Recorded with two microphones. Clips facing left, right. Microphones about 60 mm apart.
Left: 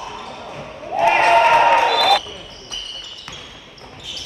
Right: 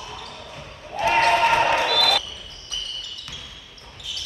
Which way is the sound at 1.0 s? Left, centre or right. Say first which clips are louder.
Left 5 dB; left.